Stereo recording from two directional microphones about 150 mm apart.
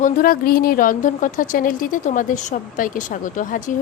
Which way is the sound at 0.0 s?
70° left (ahead or behind).